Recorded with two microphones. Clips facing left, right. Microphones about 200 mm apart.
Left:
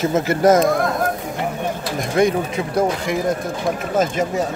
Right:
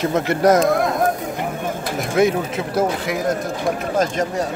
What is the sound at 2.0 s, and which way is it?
Speech, centre (ahead or behind).